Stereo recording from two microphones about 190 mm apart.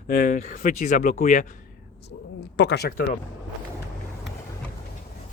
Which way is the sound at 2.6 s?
60° left (ahead or behind).